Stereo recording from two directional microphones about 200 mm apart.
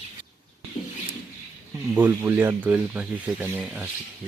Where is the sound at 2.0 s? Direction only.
10° right (ahead or behind).